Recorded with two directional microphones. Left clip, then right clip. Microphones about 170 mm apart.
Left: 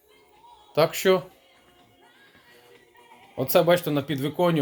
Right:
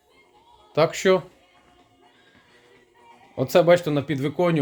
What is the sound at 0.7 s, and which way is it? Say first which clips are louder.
Speech: right 1 dB; 15° right (ahead or behind).